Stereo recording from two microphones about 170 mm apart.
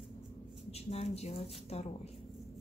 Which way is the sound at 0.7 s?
35° left (ahead or behind).